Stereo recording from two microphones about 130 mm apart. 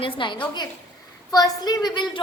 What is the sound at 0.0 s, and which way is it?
Speech, 40° left (ahead or behind).